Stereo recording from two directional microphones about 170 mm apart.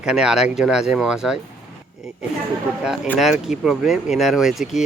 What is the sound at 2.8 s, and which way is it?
Speech, 5° right (ahead or behind).